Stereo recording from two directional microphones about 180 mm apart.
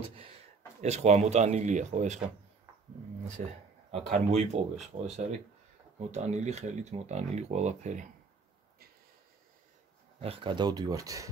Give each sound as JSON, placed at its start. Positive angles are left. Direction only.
{"t": 0.7, "sound": "speech", "side_deg": -40}
{"t": 3.4, "sound": "speech", "side_deg": -45}
{"t": 10.2, "sound": "speech", "side_deg": -30}